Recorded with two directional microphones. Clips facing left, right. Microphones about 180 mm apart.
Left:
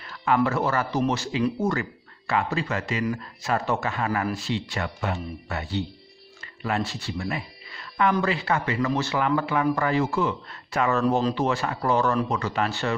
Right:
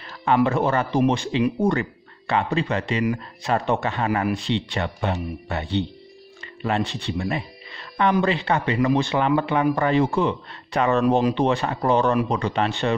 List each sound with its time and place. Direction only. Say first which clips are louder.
0.0 s a sound: right 2 dB; 35° right (ahead or behind)
0.4 s speech: right 3 dB; 15° right (ahead or behind)
1.7 s a man's voice: right 4 dB; 30° right (ahead or behind)
6.9 s speech: right 4 dB; 25° right (ahead or behind)
10.5 s a man's voice: right 3 dB; 30° right (ahead or behind)
11.0 s speech: right 5 dB; 15° right (ahead or behind)